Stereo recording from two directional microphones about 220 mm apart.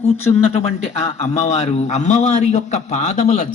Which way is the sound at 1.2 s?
30° left (ahead or behind).